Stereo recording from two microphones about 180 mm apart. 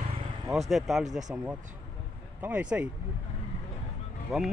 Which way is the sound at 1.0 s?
40° right (ahead or behind).